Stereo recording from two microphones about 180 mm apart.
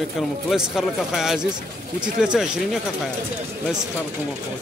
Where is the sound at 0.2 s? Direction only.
Centre (ahead or behind).